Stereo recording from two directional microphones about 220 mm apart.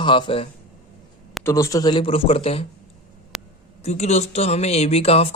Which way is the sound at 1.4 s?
15° left (ahead or behind).